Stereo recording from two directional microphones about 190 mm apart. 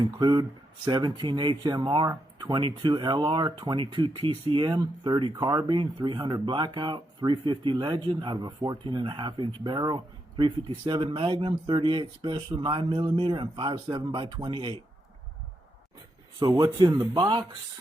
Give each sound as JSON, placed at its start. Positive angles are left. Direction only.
{"t": 0.0, "sound": "speech", "side_deg": -25}
{"t": 16.4, "sound": "speech", "side_deg": -20}